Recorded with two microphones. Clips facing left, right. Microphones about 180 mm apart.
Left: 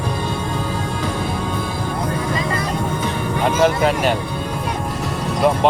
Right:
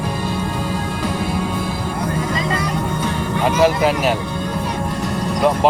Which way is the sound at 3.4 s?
Centre (ahead or behind).